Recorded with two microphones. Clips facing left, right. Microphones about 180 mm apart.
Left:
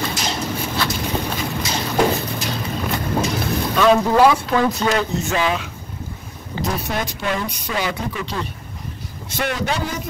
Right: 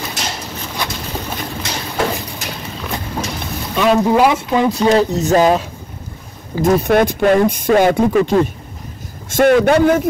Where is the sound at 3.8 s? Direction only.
15° right (ahead or behind).